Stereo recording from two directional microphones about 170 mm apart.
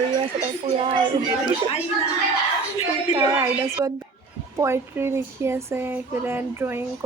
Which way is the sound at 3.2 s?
20° right (ahead or behind).